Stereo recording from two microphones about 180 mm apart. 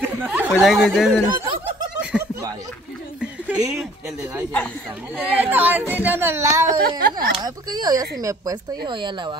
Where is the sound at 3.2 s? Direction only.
5° right (ahead or behind).